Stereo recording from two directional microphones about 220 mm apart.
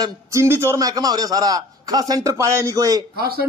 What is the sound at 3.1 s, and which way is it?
Speech, 45° right (ahead or behind).